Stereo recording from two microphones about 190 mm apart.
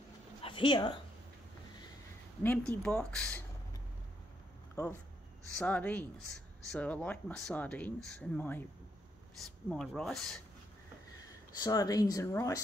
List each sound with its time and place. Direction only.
0.4 s speech: 25° left (ahead or behind)
2.4 s speech: 10° left (ahead or behind)
5.6 s speech: 5° left (ahead or behind)
11.6 s speech: 20° left (ahead or behind)